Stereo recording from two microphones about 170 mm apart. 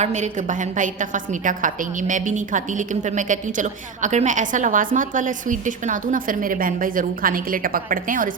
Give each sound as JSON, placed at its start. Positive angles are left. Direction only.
{"t": 0.0, "sound": "a woman's voice", "side_deg": -45}